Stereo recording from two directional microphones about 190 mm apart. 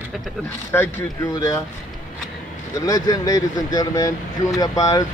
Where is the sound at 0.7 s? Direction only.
15° left (ahead or behind).